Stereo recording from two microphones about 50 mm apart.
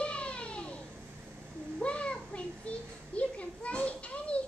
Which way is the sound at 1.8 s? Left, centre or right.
Left.